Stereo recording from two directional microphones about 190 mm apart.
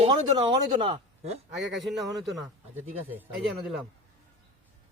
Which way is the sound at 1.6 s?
70° right (ahead or behind).